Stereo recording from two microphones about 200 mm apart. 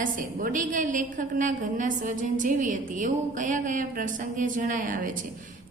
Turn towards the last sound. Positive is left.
turn(degrees=-40)  # may be behind; listen again after turning